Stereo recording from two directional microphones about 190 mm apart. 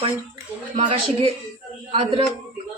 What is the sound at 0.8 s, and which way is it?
A woman's voice, 30° right (ahead or behind).